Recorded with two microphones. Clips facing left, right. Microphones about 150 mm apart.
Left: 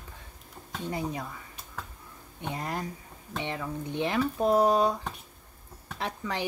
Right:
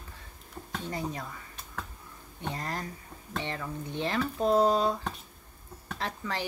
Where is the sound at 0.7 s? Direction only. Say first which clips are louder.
Left 2 dB; 10° left (ahead or behind).